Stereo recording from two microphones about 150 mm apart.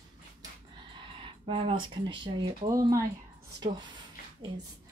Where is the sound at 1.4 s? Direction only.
35° right (ahead or behind).